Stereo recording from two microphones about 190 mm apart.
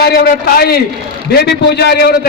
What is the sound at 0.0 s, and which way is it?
A man's voice, 55° left (ahead or behind).